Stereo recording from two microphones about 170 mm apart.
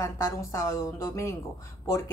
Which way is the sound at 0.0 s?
15° left (ahead or behind).